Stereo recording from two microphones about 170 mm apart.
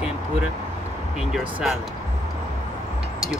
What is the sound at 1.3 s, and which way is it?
Speech, 5° right (ahead or behind).